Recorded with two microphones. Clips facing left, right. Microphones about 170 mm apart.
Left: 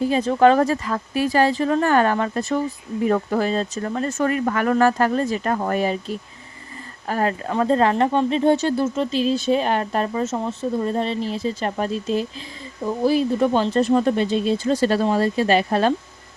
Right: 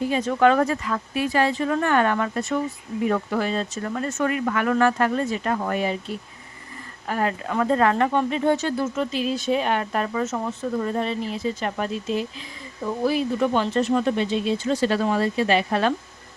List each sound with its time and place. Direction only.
0.0 s speech: 35° left (ahead or behind)